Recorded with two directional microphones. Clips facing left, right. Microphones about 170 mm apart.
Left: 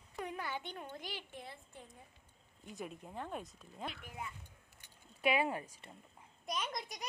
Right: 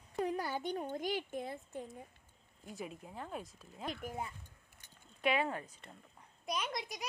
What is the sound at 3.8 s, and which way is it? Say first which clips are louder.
Speech: right 5 dB; 40° right (ahead or behind).